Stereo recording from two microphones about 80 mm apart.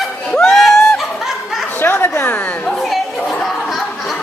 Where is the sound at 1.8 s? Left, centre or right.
Left.